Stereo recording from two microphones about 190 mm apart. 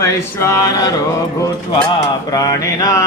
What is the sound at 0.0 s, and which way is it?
Mantra, 15° left (ahead or behind).